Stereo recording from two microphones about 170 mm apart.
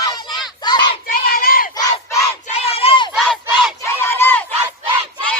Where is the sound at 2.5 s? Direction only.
35° left (ahead or behind).